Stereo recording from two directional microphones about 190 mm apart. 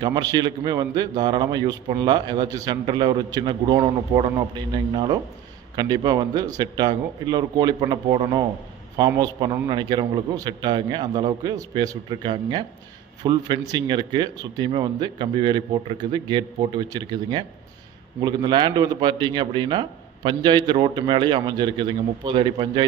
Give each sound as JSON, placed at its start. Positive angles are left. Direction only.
{"t": 0.0, "sound": "a man's voice", "side_deg": -20}